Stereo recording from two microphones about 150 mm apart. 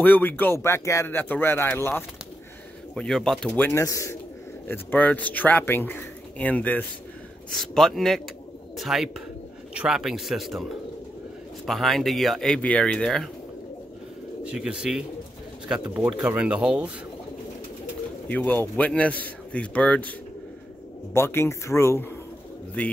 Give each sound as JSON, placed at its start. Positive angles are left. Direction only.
{"t": 0.0, "sound": "speech", "side_deg": 10}
{"t": 2.9, "sound": "speech", "side_deg": 5}
{"t": 3.5, "sound": "a man's voice", "side_deg": 15}
{"t": 14.4, "sound": "speech", "side_deg": -5}
{"t": 18.3, "sound": "speech", "side_deg": 10}
{"t": 22.8, "sound": "speech", "side_deg": 10}